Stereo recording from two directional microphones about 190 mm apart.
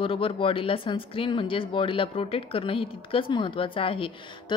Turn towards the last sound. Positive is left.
turn(degrees=25)  # may be behind; listen again after turning